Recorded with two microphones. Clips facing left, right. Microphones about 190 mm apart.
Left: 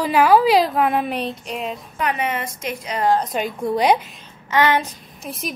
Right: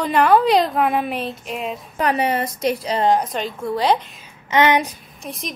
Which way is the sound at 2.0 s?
35° right (ahead or behind).